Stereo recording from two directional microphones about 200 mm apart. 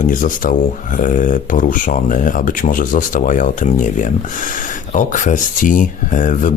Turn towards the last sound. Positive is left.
turn(degrees=40)  # may be behind; listen again after turning